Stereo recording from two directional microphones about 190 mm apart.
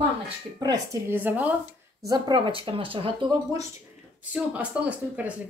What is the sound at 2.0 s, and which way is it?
Speech, 20° right (ahead or behind).